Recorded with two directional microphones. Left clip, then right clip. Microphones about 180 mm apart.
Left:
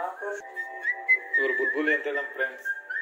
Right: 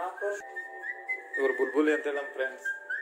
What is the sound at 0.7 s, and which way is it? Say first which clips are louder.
Whistling: left 13 dB; 55° left (ahead or behind).